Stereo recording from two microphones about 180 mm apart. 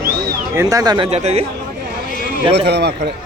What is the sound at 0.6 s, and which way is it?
Speech, 20° right (ahead or behind).